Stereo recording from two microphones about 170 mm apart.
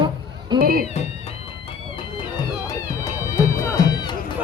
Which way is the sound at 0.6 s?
60° right (ahead or behind).